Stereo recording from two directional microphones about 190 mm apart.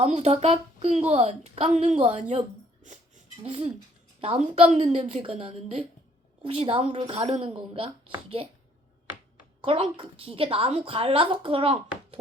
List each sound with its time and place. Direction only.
0.0 s a woman's voice: 35° right (ahead or behind)
3.4 s a woman's voice: 30° right (ahead or behind)
9.6 s a woman's voice: 30° right (ahead or behind)